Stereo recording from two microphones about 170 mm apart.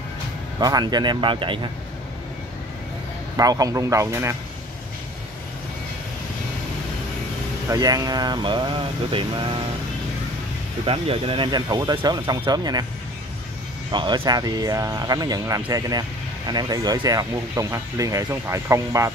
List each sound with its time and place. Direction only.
0.6 s speech: 25° right (ahead or behind)
3.3 s speech: 20° right (ahead or behind)
7.7 s speech: 20° right (ahead or behind)
10.9 s speech: 35° right (ahead or behind)
13.9 s speech: 25° right (ahead or behind)